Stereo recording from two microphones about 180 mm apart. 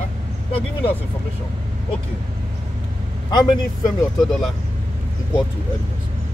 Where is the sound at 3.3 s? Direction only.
20° left (ahead or behind).